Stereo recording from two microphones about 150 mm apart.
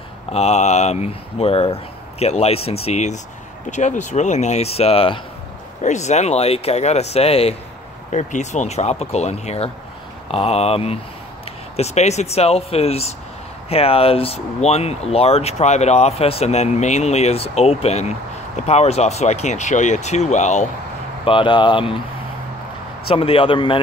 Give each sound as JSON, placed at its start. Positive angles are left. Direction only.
{"t": 0.3, "sound": "speech", "side_deg": 45}
{"t": 5.8, "sound": "speech", "side_deg": 50}
{"t": 21.2, "sound": "speech", "side_deg": 35}
{"t": 23.0, "sound": "speech", "side_deg": 40}